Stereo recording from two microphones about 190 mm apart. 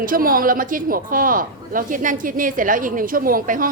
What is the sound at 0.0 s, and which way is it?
Speech, 50° right (ahead or behind).